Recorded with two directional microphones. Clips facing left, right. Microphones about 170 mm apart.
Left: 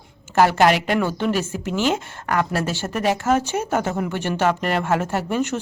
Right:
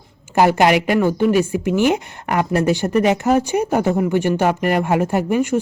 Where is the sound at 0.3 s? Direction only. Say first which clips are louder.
Right 2 dB; 15° right (ahead or behind).